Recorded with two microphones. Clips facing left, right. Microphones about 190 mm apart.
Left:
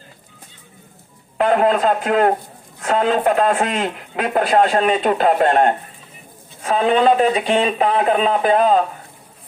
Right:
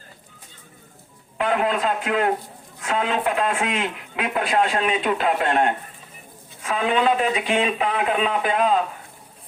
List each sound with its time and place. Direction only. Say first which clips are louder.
1.4 s speech: left 6 dB; 40° left (ahead or behind)